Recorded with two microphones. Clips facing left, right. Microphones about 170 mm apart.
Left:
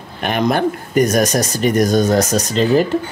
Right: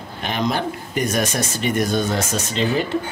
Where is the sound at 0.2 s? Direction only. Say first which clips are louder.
Left 6 dB; 55° left (ahead or behind); by 2.6 s 40° left (ahead or behind).